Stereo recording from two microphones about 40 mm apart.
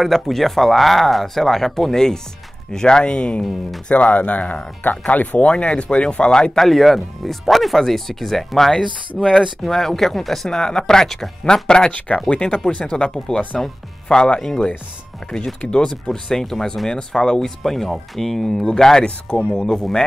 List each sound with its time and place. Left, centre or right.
0.0 s speech: centre; by 6.5 s left
6.5 s speech: centre
10.5 s speech: centre
15.9 s speech: centre
19.0 s speech: left
19.5 s speech: centre